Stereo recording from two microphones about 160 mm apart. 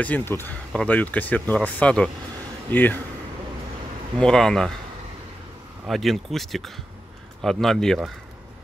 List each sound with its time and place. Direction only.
0.0 s speech: 10° left (ahead or behind)
4.2 s speech: 5° left (ahead or behind)
5.9 s speech: centre (ahead or behind)